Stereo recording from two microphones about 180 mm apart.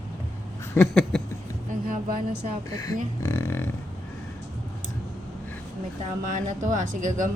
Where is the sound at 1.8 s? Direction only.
50° right (ahead or behind).